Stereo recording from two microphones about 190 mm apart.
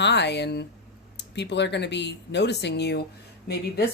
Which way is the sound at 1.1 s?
65° left (ahead or behind).